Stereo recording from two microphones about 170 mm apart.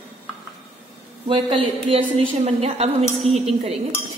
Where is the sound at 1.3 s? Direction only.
30° right (ahead or behind).